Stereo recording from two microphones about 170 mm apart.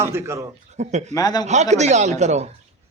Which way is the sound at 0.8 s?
40° right (ahead or behind).